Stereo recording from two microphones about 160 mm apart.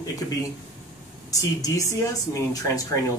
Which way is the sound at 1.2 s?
20° left (ahead or behind).